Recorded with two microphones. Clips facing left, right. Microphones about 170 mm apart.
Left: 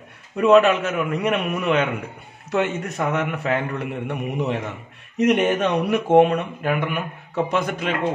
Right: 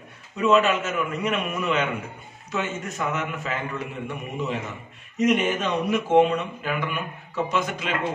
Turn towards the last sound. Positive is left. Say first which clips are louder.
# left 3 dB
turn(degrees=55)  # may be behind; listen again after turning